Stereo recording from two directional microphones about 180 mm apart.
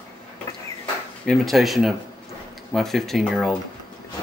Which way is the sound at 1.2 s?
Centre (ahead or behind).